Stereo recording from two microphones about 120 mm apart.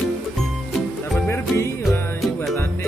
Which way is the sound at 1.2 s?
20° left (ahead or behind).